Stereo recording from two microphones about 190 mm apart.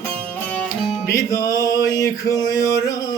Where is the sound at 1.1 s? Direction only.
20° left (ahead or behind).